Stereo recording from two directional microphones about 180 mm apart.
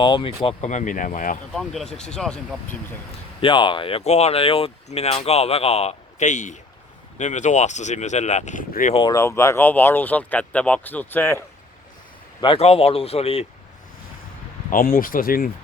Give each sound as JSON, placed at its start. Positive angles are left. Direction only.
{"t": 0.0, "sound": "speech", "side_deg": 30}
{"t": 0.4, "sound": "speech", "side_deg": 40}
{"t": 1.5, "sound": "speech", "side_deg": 5}
{"t": 3.4, "sound": "speech", "side_deg": 25}
{"t": 9.0, "sound": "speech", "side_deg": 20}
{"t": 12.4, "sound": "speech", "side_deg": 30}
{"t": 14.7, "sound": "speech", "side_deg": 50}